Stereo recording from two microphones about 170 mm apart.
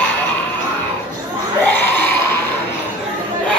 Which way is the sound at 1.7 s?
10° left (ahead or behind).